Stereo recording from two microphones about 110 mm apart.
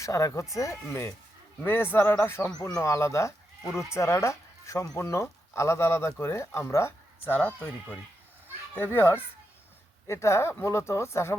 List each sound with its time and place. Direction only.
0.0 s speech: 30° left (ahead or behind)